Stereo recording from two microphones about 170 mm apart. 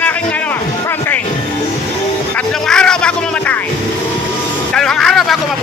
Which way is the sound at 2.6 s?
5° left (ahead or behind).